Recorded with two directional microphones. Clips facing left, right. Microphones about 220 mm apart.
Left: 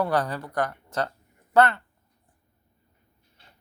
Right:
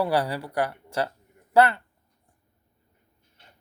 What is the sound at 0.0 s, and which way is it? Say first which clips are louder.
Speech: right 1 dB; 10° right (ahead or behind).